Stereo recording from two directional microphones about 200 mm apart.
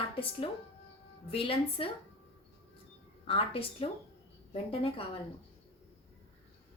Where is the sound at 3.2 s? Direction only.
30° left (ahead or behind).